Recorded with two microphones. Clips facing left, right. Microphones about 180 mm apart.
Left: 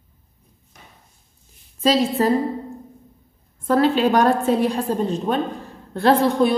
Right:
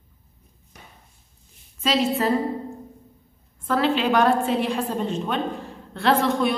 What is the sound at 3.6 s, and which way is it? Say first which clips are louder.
A woman's voice: left 4 dB; 40° left (ahead or behind).